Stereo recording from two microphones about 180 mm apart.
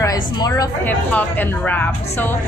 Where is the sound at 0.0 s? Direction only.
20° left (ahead or behind).